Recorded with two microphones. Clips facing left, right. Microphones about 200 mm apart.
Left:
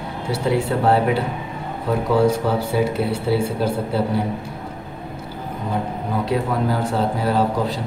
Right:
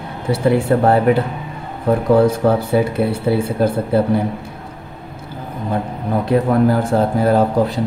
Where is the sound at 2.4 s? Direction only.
55° right (ahead or behind).